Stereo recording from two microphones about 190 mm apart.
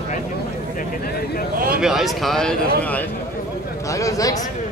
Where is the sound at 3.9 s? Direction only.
15° left (ahead or behind).